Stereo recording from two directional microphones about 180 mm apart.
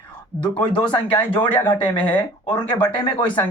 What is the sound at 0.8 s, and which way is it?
Speech, 25° left (ahead or behind).